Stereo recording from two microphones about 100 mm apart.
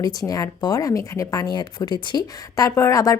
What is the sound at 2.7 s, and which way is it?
Speech, 30° left (ahead or behind).